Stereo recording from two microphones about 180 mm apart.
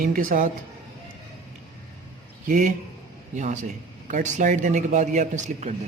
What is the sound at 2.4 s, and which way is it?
Speech, 50° right (ahead or behind).